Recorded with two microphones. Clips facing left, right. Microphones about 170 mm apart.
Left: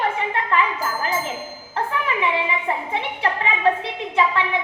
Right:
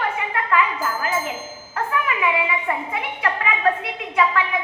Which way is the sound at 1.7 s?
30° left (ahead or behind).